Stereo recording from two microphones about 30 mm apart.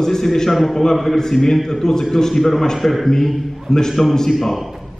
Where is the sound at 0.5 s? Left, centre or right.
Centre.